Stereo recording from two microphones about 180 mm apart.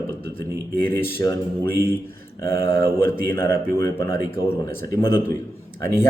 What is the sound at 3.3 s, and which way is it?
Speech, 15° left (ahead or behind).